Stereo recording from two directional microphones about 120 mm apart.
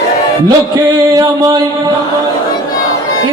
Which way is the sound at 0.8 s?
35° right (ahead or behind).